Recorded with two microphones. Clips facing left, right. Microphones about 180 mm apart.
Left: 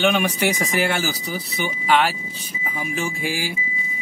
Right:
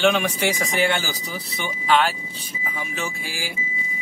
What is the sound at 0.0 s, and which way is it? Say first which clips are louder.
Speech: even; 5° left (ahead or behind).